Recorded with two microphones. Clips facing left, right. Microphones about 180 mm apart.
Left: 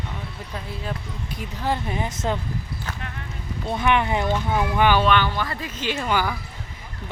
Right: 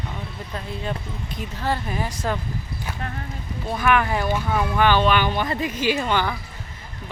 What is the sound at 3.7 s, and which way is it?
Speech, 25° left (ahead or behind).